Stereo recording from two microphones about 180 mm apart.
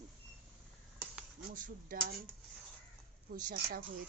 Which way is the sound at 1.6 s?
50° right (ahead or behind).